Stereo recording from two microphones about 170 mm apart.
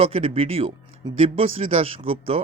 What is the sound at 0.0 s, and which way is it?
Speech, 35° right (ahead or behind).